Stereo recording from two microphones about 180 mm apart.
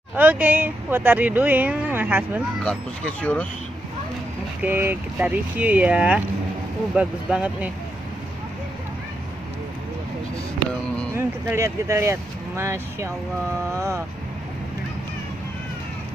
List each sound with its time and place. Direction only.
0.1 s speech: 10° right (ahead or behind)
2.6 s speech: 5° left (ahead or behind)
4.6 s speech: 10° right (ahead or behind)
11.1 s speech: 15° right (ahead or behind)